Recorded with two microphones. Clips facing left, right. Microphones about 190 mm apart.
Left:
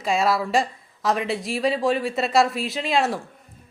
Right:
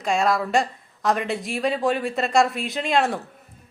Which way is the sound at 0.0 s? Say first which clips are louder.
Even; centre (ahead or behind).